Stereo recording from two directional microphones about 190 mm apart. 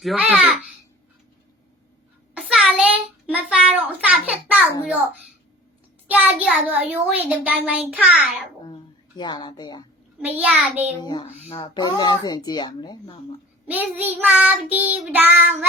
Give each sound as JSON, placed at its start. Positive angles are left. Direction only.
{"t": 0.0, "sound": "a child's voice", "side_deg": -5}
{"t": 2.3, "sound": "child singing", "side_deg": -5}
{"t": 3.2, "sound": "a sound", "side_deg": -5}
{"t": 6.1, "sound": "child singing", "side_deg": -10}
{"t": 8.0, "sound": "a child's voice", "side_deg": -5}
{"t": 9.1, "sound": "a child's voice", "side_deg": 25}
{"t": 10.2, "sound": "child singing", "side_deg": -5}
{"t": 11.0, "sound": "a child's voice", "side_deg": 25}
{"t": 13.7, "sound": "child singing", "side_deg": -10}